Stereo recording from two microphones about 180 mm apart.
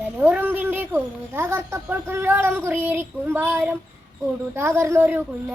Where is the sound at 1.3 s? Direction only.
15° right (ahead or behind).